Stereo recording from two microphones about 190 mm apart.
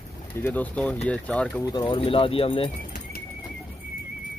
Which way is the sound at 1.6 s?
20° left (ahead or behind).